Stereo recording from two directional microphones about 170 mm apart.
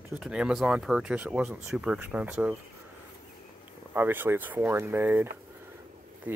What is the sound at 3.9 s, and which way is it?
Speech, 10° right (ahead or behind).